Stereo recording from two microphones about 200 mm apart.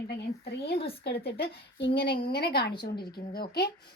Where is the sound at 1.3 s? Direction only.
55° left (ahead or behind).